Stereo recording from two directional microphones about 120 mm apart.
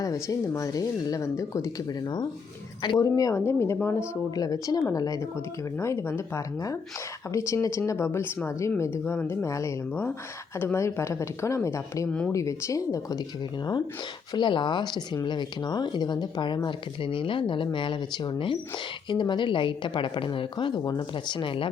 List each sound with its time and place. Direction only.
0.0 s speech: 30° left (ahead or behind)
14.3 s speech: 40° left (ahead or behind)